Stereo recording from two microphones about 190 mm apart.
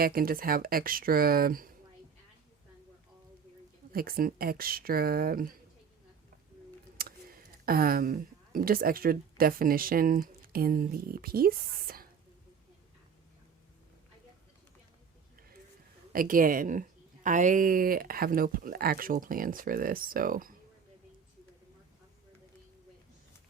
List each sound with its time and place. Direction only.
0.0 s speech: 50° right (ahead or behind)
3.9 s speech: 50° right (ahead or behind)
6.9 s speech: 50° right (ahead or behind)
16.1 s speech: 45° right (ahead or behind)